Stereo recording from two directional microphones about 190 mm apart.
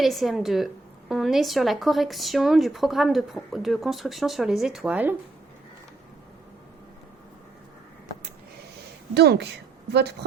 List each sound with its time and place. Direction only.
0.0 s a woman's voice: centre (ahead or behind)
9.1 s speech: 60° right (ahead or behind)